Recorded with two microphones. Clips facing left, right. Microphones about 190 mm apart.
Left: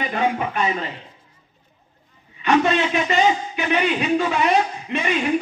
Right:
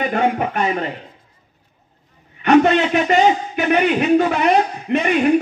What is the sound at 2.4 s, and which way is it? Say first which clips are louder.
Speech: right 5 dB; 55° right (ahead or behind).